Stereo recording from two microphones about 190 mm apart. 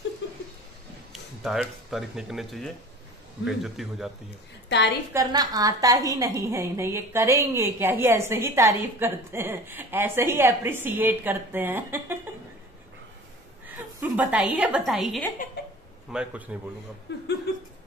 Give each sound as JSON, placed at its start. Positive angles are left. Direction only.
{"t": 1.4, "sound": "speech", "side_deg": 0}
{"t": 4.6, "sound": "a woman's voice", "side_deg": 65}
{"t": 5.1, "sound": "a woman's voice", "side_deg": -20}
{"t": 14.0, "sound": "a woman's voice", "side_deg": -5}
{"t": 15.6, "sound": "a sound", "side_deg": 60}
{"t": 16.1, "sound": "speech", "side_deg": -5}
{"t": 17.1, "sound": "speech", "side_deg": 65}